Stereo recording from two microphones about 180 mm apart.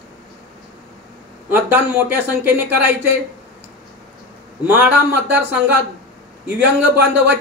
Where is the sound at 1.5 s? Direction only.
10° right (ahead or behind).